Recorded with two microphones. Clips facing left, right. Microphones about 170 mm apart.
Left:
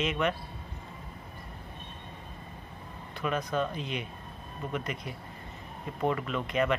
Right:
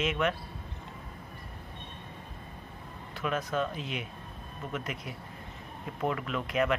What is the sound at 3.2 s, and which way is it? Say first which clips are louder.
Speech: left 1 dB; 5° right (ahead or behind).